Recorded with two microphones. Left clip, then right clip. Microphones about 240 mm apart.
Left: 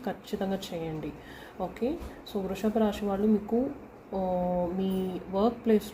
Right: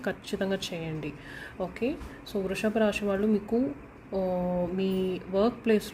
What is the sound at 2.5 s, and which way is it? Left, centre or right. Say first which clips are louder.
Speech: right 2 dB; right.